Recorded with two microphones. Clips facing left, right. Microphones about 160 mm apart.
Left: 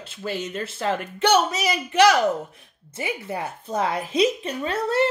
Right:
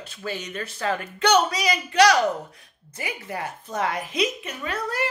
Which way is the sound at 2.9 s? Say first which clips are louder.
Left 4 dB; 25° left (ahead or behind).